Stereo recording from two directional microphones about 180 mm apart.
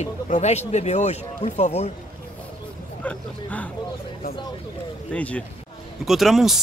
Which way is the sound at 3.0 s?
5° left (ahead or behind).